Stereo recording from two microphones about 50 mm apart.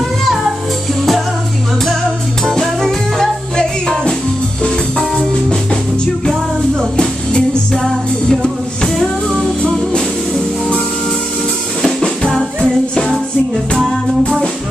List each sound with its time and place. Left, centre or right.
2.4 s music: centre
6.8 s music: centre
11.8 s music: centre